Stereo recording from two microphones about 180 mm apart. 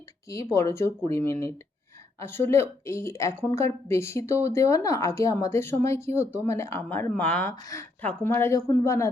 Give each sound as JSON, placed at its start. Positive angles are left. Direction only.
{"t": 0.5, "sound": "a woman's voice", "side_deg": 15}